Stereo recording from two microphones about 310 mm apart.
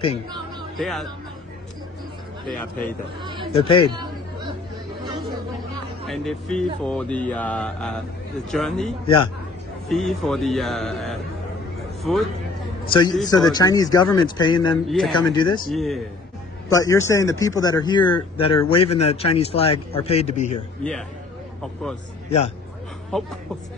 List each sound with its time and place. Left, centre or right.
0.7 s speech: centre
3.5 s speech: centre
3.9 s chatter: centre
6.0 s speech: centre
9.0 s speech: centre
9.8 s speech: centre
12.8 s a man's voice: centre
14.9 s speech: centre
15.1 s speech: centre
15.7 s a man's voice: centre; by 20.5 s left
20.8 s speech: centre
23.1 s speech: centre